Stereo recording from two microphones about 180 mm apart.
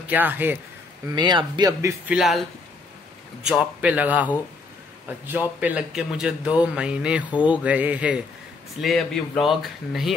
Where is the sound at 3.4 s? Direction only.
5° right (ahead or behind).